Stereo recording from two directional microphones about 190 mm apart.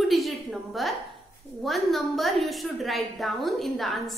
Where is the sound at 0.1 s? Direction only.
Centre (ahead or behind).